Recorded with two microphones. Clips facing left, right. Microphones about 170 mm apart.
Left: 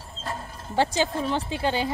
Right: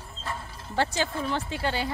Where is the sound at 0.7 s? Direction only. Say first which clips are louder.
Left 4 dB; 15° left (ahead or behind).